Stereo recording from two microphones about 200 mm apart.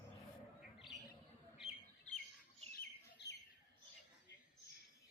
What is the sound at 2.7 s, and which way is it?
Bird, 55° left (ahead or behind).